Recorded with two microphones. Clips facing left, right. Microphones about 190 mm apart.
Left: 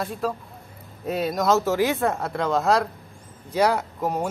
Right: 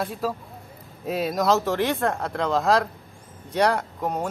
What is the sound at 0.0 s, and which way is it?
Speech, centre (ahead or behind).